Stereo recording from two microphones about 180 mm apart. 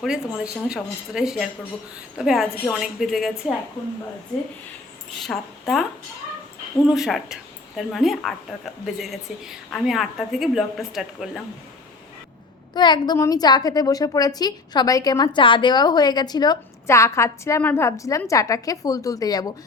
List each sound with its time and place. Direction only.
0.0 s a woman's voice: 5° right (ahead or behind)
5.2 s speech: centre (ahead or behind)
6.8 s a woman's voice: centre (ahead or behind)
12.7 s a woman's voice: 25° left (ahead or behind)